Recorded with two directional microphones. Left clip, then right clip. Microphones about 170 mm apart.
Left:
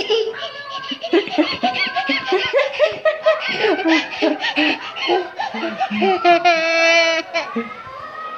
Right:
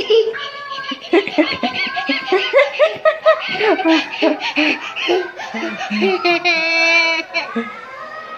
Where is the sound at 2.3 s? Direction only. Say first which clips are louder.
Right 6 dB; 30° right (ahead or behind).